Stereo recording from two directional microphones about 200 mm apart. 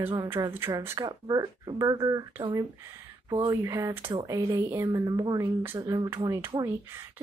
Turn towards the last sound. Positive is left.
turn(degrees=-15)  # may be behind; listen again after turning